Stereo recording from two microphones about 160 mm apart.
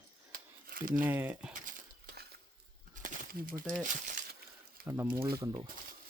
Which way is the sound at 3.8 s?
50° right (ahead or behind).